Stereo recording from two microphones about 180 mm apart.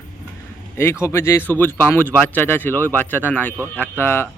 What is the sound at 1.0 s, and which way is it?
Speech, 15° left (ahead or behind).